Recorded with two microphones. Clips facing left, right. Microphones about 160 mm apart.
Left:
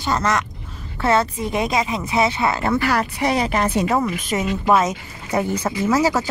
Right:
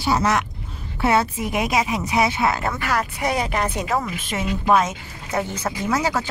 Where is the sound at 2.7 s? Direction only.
30° left (ahead or behind).